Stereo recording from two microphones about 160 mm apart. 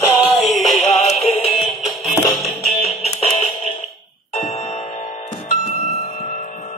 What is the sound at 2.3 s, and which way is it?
Music, 25° left (ahead or behind).